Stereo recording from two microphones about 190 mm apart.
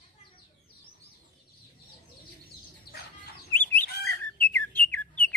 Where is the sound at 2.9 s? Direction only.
55° left (ahead or behind).